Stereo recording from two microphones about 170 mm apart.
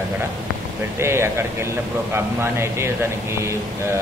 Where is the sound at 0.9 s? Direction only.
15° right (ahead or behind).